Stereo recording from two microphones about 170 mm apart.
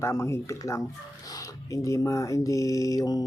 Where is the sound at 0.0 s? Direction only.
15° left (ahead or behind).